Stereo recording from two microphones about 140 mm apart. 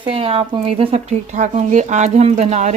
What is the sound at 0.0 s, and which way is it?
Speech, 45° right (ahead or behind).